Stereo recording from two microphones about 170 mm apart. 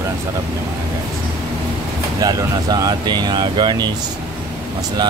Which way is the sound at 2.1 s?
20° right (ahead or behind).